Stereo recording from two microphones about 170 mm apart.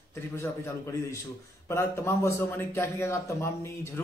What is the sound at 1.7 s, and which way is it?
Speech, 15° left (ahead or behind).